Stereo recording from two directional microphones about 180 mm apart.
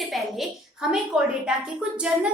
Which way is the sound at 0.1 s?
Centre (ahead or behind).